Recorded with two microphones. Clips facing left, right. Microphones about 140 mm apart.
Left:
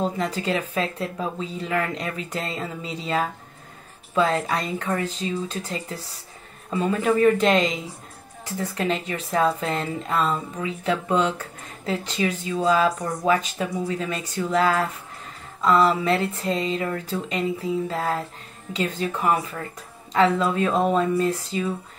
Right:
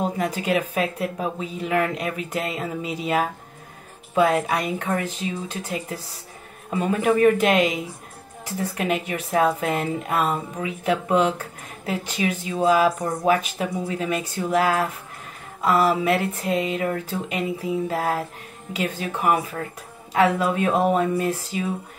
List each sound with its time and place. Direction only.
0.0 s speech: 10° right (ahead or behind)